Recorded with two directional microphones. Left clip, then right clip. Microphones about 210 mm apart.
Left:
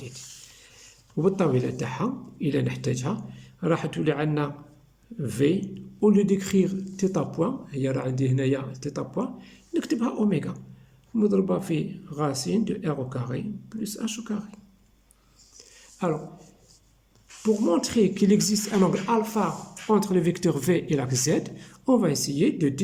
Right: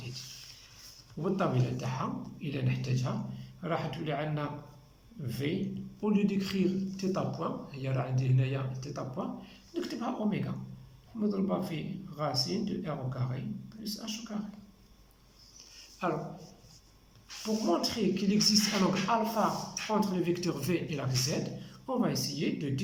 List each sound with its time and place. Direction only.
1.2 s a man's voice: 40° left (ahead or behind)
17.4 s a man's voice: 40° left (ahead or behind)